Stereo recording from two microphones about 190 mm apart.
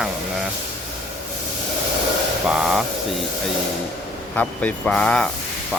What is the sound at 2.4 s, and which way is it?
Speech, centre (ahead or behind).